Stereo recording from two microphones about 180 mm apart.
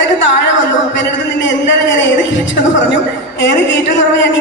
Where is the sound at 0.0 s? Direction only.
90° left.